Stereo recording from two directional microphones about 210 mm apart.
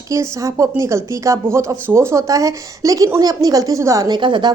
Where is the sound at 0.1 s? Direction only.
15° right (ahead or behind).